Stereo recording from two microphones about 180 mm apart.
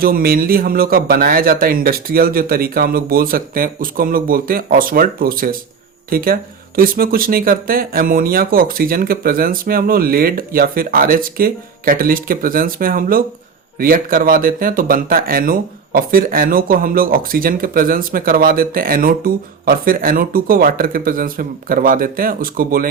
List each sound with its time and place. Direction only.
0.0 s speech: 55° right (ahead or behind)